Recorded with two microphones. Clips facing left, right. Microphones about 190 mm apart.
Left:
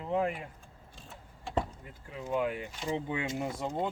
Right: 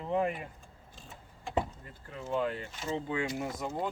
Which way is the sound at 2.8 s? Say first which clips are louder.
Even; 15° left (ahead or behind).